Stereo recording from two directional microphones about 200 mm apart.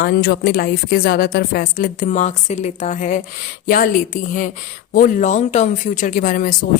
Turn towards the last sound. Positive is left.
turn(degrees=45)  # may be behind; listen again after turning